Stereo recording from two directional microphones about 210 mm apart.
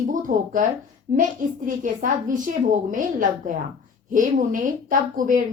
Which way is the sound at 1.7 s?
40° right (ahead or behind).